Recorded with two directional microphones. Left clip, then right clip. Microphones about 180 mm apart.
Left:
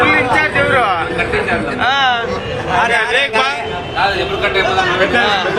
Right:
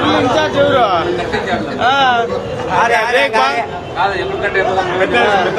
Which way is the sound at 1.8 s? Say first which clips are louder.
Right 2 dB; 50° right (ahead or behind).